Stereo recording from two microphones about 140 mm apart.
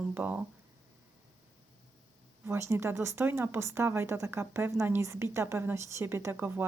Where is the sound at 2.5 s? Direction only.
20° right (ahead or behind).